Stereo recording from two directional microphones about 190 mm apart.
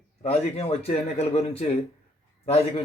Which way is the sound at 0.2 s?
30° left (ahead or behind).